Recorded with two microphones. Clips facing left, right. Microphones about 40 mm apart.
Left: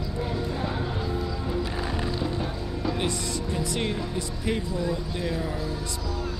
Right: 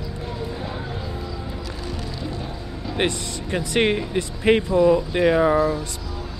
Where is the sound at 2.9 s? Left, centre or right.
Right.